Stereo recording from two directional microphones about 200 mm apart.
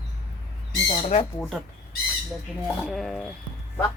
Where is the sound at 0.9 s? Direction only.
35° left (ahead or behind).